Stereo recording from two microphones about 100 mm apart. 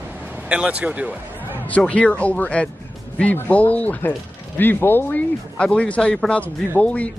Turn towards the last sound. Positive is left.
turn(degrees=15)  # may be behind; listen again after turning